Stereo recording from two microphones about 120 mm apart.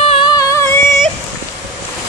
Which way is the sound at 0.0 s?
50° left (ahead or behind).